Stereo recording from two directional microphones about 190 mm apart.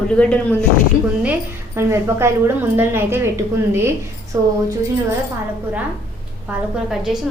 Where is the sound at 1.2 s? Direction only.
10° right (ahead or behind).